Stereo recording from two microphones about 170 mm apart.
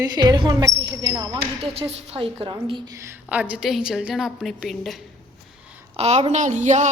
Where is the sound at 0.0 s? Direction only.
25° right (ahead or behind).